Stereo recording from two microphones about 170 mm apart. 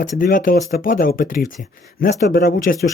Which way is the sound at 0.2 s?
55° left (ahead or behind).